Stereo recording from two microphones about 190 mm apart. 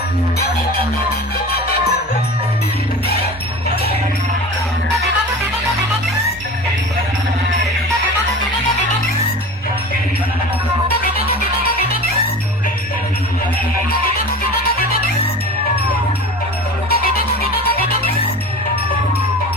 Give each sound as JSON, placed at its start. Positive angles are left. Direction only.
{"t": 16.9, "sound": "music", "side_deg": 50}